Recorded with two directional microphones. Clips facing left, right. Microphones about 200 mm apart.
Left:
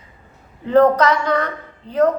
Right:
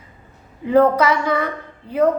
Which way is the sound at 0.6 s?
10° right (ahead or behind).